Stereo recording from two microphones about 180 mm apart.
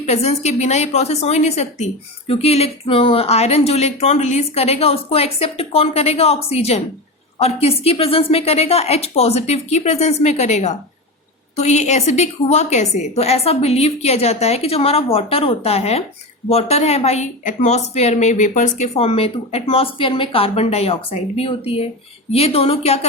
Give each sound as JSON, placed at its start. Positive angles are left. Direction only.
{"t": 0.0, "sound": "a woman's voice", "side_deg": 35}